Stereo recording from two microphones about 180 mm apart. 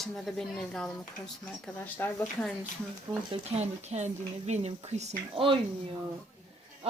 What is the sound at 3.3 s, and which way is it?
Speech, 35° right (ahead or behind).